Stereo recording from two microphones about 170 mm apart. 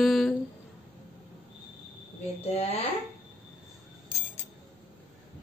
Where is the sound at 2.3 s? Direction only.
35° left (ahead or behind).